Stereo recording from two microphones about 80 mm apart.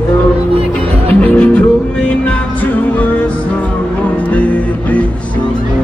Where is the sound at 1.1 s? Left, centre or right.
Left.